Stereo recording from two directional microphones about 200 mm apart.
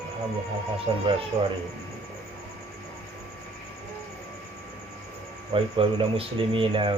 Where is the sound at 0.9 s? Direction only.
30° right (ahead or behind).